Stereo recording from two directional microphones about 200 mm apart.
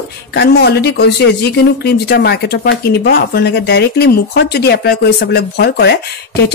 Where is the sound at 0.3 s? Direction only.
55° left (ahead or behind).